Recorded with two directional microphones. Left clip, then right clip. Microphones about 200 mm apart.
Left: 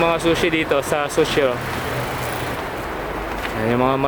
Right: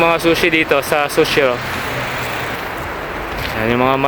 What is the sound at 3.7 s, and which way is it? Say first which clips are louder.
Speech: right 4 dB; 30° right (ahead or behind).